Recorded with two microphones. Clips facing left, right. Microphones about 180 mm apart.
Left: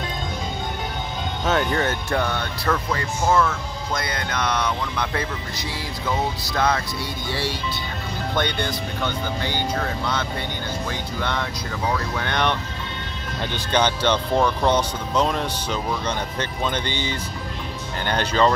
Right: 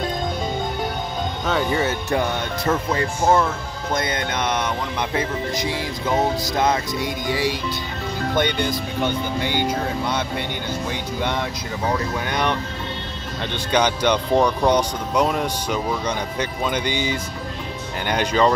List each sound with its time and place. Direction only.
1.4 s music: 5° left (ahead or behind)
1.7 s speech: 10° right (ahead or behind)
13.7 s speech: 10° right (ahead or behind)